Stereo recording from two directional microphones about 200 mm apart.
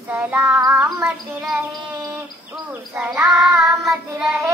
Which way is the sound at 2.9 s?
5° right (ahead or behind).